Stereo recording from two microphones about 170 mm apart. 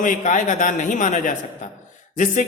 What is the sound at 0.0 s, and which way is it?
A man's voice, 50° left (ahead or behind).